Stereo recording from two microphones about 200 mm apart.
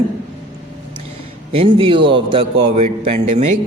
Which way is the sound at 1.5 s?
25° right (ahead or behind).